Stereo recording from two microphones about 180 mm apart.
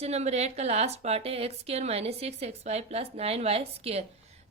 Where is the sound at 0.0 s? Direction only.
35° right (ahead or behind).